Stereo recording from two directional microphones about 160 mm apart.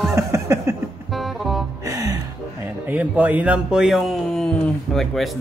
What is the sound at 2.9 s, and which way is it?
Speech, 10° right (ahead or behind).